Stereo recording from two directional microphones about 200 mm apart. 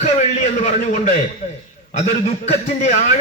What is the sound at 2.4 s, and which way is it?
Speech, 35° left (ahead or behind).